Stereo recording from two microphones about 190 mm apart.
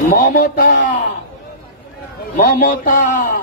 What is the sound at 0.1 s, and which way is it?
Speech, 50° left (ahead or behind).